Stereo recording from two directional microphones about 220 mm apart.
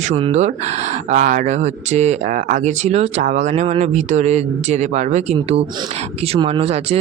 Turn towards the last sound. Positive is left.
turn(degrees=-25)  # may be behind; listen again after turning